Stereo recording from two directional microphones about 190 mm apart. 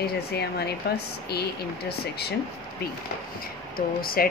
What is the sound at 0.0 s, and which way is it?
Speech, 55° left (ahead or behind).